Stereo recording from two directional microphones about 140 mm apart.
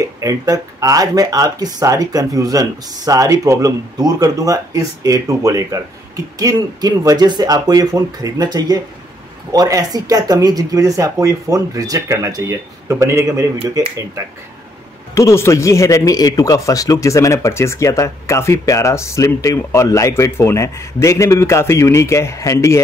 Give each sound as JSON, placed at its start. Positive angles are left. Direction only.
{"t": 0.0, "sound": "speech", "side_deg": -25}
{"t": 15.1, "sound": "speech", "side_deg": 20}